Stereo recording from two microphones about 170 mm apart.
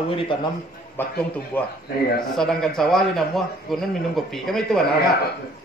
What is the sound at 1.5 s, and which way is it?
A man's voice, 10° left (ahead or behind).